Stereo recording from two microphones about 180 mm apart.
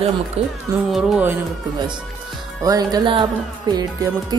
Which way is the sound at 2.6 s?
20° right (ahead or behind).